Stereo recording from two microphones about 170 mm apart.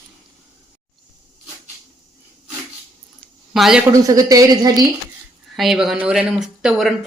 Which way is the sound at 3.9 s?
20° right (ahead or behind).